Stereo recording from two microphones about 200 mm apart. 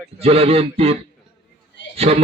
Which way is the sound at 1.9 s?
30° right (ahead or behind).